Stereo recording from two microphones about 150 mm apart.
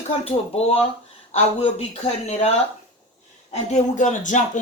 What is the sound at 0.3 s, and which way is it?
Speech, 40° left (ahead or behind).